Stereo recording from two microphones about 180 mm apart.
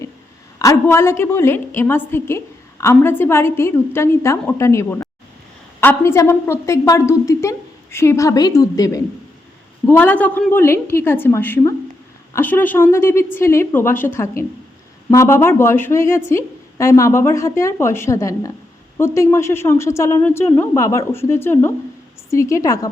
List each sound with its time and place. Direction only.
0.6 s a woman's voice: 15° left (ahead or behind)